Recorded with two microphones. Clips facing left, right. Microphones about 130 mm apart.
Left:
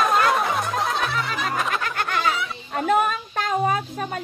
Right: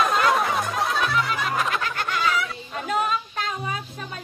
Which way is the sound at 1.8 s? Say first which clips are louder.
Left 1 dB; 50° left (ahead or behind).